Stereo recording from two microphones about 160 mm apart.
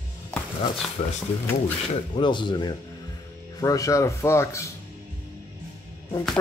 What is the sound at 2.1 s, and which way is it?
Speech, 30° left (ahead or behind).